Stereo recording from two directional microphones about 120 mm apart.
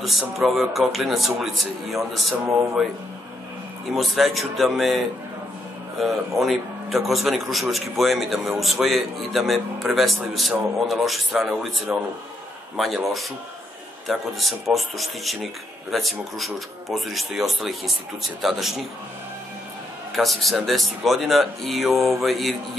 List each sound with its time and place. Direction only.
0.0 s a man's voice: centre (ahead or behind)
3.9 s a man's voice: centre (ahead or behind)
20.2 s a man's voice: centre (ahead or behind)